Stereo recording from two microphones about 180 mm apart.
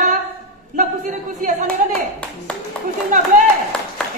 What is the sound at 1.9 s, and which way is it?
Clapping, 5° left (ahead or behind).